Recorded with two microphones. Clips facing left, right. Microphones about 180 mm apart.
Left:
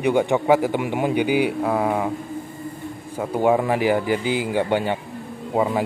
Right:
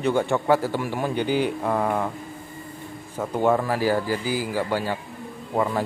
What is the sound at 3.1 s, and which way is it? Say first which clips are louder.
A man's voice: left 2 dB; 10° left (ahead or behind).